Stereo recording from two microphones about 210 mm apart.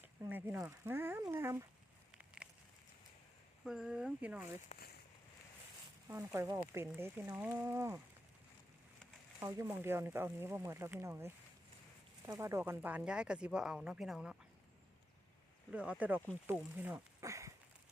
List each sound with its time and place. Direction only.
0.3 s speech: 10° right (ahead or behind)
2.1 s a sound: 5° right (ahead or behind)
3.6 s speech: centre (ahead or behind)
4.7 s speech: 30° left (ahead or behind)
6.1 s speech: 10° right (ahead or behind)
9.4 s speech: 15° right (ahead or behind)
15.7 s speech: 5° right (ahead or behind)